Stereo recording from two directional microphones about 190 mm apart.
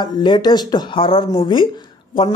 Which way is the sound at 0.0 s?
25° left (ahead or behind).